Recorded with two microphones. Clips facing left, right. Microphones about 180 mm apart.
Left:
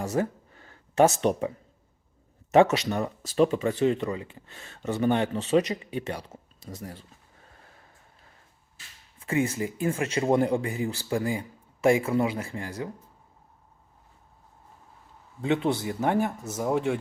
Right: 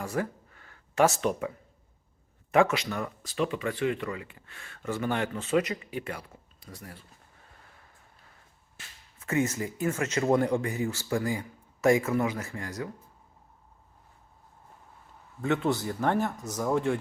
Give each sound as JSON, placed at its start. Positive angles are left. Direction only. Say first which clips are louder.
{"t": 0.0, "sound": "a sound", "louder": "left 4 dB", "side_deg": 25}
{"t": 1.3, "sound": "speech", "louder": "left 4 dB", "side_deg": 30}
{"t": 2.6, "sound": "speech", "louder": "left 4 dB", "side_deg": 35}
{"t": 9.3, "sound": "speech", "louder": "left 1 dB", "side_deg": 30}
{"t": 9.9, "sound": "speech", "louder": "left 1 dB", "side_deg": 15}
{"t": 15.4, "sound": "speech", "louder": "left 2 dB", "side_deg": 20}